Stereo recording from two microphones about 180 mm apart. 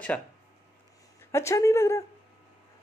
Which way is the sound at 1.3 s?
15° left (ahead or behind).